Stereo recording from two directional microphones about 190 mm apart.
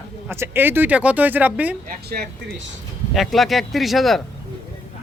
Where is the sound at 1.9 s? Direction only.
55° right (ahead or behind).